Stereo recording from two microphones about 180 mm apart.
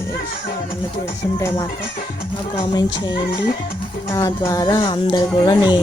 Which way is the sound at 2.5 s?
25° left (ahead or behind).